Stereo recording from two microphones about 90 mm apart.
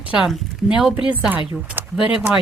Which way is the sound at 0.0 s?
15° right (ahead or behind).